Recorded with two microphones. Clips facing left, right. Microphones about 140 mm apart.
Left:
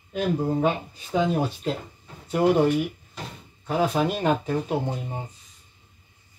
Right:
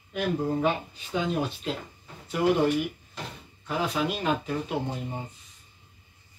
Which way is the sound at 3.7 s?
45° left (ahead or behind).